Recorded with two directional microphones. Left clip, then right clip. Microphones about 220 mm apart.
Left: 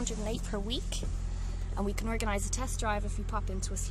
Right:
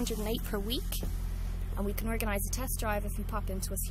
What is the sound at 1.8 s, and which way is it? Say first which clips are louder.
Speech: left 1 dB; 15° left (ahead or behind).